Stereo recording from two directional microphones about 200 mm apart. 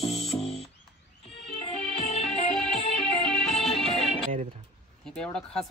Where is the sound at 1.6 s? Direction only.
30° left (ahead or behind).